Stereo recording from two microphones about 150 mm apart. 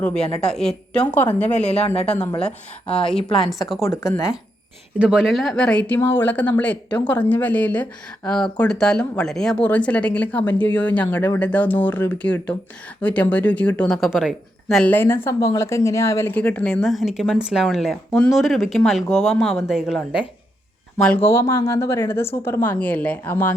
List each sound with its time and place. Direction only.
0.0 s speech: 5° left (ahead or behind)
1.5 s speech: 45° left (ahead or behind)
2.0 s speech: 10° left (ahead or behind)
4.9 s speech: 5° right (ahead or behind)
14.9 s speech: 15° left (ahead or behind); by 20.0 s 5° right (ahead or behind)
21.0 s speech: 10° left (ahead or behind)